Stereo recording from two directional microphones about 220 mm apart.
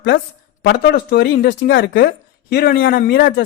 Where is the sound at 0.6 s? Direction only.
50° left (ahead or behind).